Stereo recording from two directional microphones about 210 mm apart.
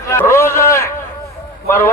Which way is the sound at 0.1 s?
10° left (ahead or behind).